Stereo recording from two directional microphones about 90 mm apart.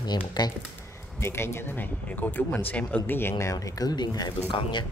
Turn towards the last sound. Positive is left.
turn(degrees=75)  # may be behind; listen again after turning